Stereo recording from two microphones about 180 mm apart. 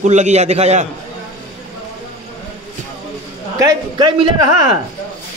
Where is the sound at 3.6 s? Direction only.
20° right (ahead or behind).